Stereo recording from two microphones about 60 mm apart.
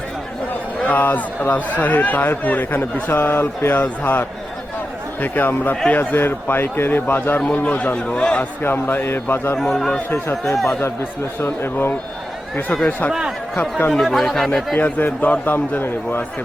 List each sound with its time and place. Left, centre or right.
0.9 s a man's voice: left
7.5 s a man's voice: left
8.6 s a man's voice: left
9.6 s speech: centre
10.1 s a man's voice: left
13.6 s a man's voice: left
13.9 s speech: centre
14.8 s a man's voice: left